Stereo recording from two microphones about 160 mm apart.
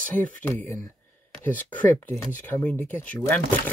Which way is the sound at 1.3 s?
10° left (ahead or behind).